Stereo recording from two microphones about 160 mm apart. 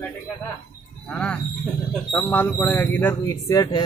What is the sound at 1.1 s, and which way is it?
Speech, 10° left (ahead or behind).